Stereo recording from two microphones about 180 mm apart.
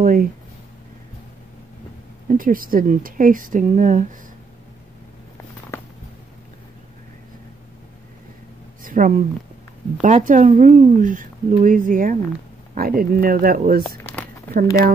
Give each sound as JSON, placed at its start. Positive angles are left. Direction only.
{"t": 0.0, "sound": "speech", "side_deg": -50}
{"t": 2.2, "sound": "speech", "side_deg": -50}
{"t": 5.7, "sound": "a sound", "side_deg": 15}
{"t": 8.8, "sound": "speech", "side_deg": -50}
{"t": 13.8, "sound": "a sound", "side_deg": 10}
{"t": 14.5, "sound": "speech", "side_deg": -55}